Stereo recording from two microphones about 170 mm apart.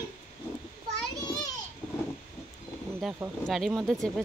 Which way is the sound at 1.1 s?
20° left (ahead or behind).